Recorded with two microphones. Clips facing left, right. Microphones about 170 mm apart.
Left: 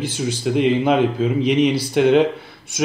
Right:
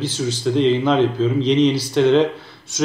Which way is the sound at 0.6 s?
15° left (ahead or behind).